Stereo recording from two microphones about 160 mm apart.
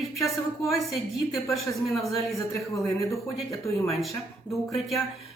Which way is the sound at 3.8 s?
Centre (ahead or behind).